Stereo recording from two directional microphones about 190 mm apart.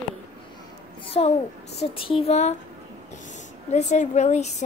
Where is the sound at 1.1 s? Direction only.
35° left (ahead or behind).